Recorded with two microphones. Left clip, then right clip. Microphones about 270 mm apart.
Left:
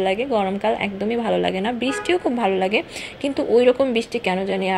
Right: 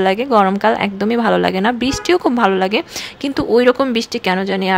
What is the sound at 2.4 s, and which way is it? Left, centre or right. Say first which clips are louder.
Speech: right 5 dB; right.